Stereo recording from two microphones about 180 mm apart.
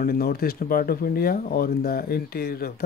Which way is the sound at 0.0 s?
55° left (ahead or behind).